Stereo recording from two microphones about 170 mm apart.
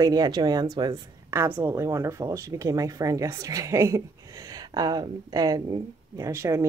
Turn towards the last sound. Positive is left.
turn(degrees=-15)  # may be behind; listen again after turning